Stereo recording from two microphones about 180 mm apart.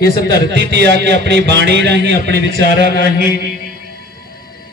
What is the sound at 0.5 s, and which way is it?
A man's voice, 70° right (ahead or behind).